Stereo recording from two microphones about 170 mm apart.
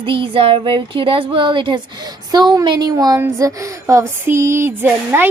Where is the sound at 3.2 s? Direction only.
20° right (ahead or behind).